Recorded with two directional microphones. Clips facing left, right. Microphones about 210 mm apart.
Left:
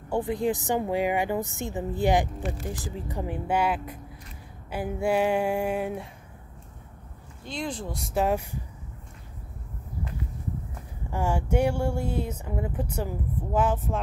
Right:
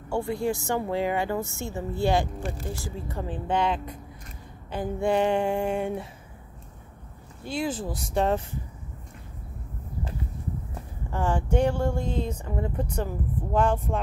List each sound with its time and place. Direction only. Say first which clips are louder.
0.1 s speech: left 1 dB; 20° left (ahead or behind)
7.4 s speech: right 4 dB; 5° right (ahead or behind); by 8.5 s 10° left (ahead or behind)
11.1 s speech: right 1 dB; 10° left (ahead or behind)